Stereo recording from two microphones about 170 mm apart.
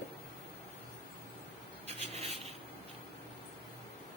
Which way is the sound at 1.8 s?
40° right (ahead or behind).